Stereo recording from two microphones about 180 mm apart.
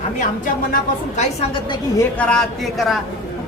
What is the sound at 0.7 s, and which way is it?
Speech, 40° left (ahead or behind).